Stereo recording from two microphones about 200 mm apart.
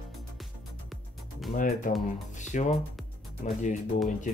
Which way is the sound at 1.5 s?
40° left (ahead or behind).